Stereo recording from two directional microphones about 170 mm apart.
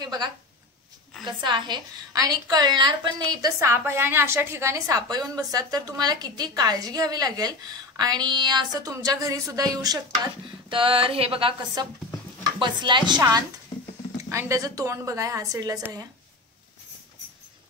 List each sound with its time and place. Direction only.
0.0 s a woman's voice: 25° right (ahead or behind)